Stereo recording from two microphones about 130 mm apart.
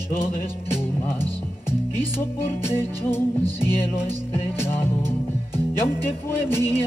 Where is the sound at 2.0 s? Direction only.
15° left (ahead or behind).